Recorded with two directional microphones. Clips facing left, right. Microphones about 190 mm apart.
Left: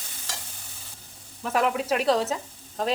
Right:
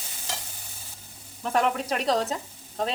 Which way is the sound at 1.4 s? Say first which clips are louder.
Even; centre (ahead or behind).